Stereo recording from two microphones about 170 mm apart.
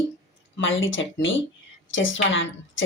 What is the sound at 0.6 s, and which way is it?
Speech, 90° left.